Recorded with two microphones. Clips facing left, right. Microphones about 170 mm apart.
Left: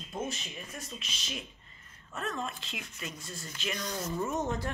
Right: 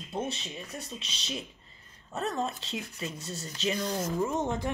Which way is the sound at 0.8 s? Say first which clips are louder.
Right 3 dB; 30° right (ahead or behind).